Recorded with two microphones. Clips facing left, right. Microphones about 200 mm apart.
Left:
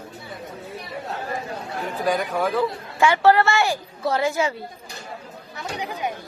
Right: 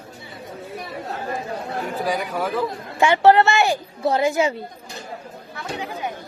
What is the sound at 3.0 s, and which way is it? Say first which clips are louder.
A woman's voice: right 2 dB; 20° right (ahead or behind).